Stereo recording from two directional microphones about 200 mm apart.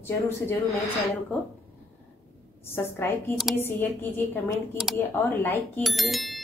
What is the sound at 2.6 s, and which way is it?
A woman's voice, 10° left (ahead or behind).